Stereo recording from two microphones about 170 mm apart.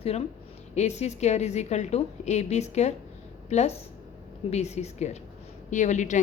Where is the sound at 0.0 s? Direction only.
35° left (ahead or behind).